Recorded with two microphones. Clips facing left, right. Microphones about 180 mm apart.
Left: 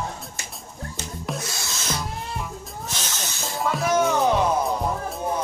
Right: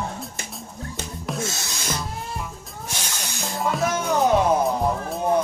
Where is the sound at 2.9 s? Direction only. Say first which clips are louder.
Right 1 dB; 15° right (ahead or behind).